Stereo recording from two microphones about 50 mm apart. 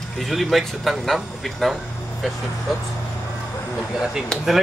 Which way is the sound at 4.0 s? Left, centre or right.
Centre.